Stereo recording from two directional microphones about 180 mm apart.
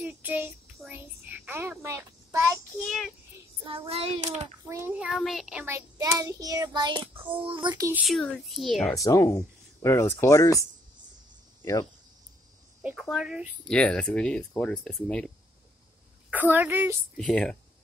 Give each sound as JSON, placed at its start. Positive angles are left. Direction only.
{"t": 0.0, "sound": "child singing", "side_deg": -10}
{"t": 2.8, "sound": "child singing", "side_deg": 0}
{"t": 3.6, "sound": "child singing", "side_deg": -30}
{"t": 4.6, "sound": "child singing", "side_deg": -15}
{"t": 7.4, "sound": "a child's voice", "side_deg": -25}
{"t": 7.9, "sound": "speech", "side_deg": 0}
{"t": 8.9, "sound": "speech", "side_deg": 20}
{"t": 11.6, "sound": "speech", "side_deg": 20}
{"t": 12.8, "sound": "speech", "side_deg": 0}
{"t": 16.3, "sound": "a woman's voice", "side_deg": -10}
{"t": 17.2, "sound": "speech", "side_deg": 5}